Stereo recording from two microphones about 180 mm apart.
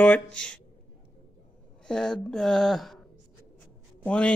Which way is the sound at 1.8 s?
5° left (ahead or behind).